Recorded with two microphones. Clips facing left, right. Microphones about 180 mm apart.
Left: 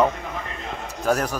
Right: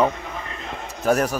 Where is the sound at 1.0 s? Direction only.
10° right (ahead or behind).